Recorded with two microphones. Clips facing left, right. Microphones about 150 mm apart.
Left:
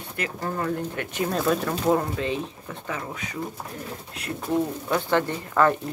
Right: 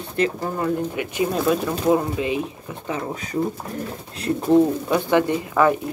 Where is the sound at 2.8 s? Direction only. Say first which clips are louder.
Right 6 dB; 25° right (ahead or behind).